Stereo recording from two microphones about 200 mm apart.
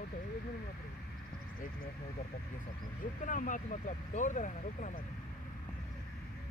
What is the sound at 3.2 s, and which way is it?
Speech, 40° left (ahead or behind).